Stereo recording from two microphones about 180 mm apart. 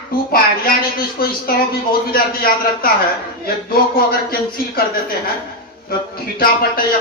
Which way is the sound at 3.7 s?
55° left (ahead or behind).